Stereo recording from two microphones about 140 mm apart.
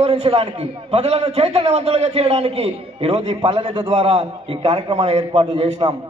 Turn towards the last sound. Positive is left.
turn(degrees=-45)  # may be behind; listen again after turning